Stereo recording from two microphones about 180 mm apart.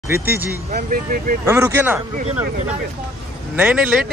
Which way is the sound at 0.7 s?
55° right (ahead or behind).